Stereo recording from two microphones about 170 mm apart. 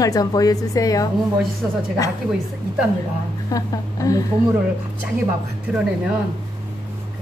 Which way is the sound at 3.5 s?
20° left (ahead or behind).